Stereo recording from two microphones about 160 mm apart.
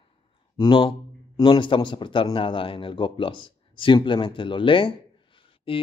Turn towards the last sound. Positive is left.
turn(degrees=35)  # may be behind; listen again after turning